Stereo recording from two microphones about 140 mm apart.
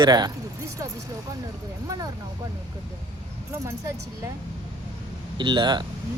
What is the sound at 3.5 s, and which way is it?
Speech, 20° right (ahead or behind).